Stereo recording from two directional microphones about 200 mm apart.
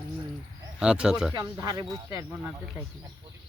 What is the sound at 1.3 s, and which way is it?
Speech, 20° right (ahead or behind).